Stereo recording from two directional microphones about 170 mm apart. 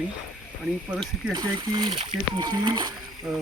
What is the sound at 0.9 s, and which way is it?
Speech, 25° right (ahead or behind).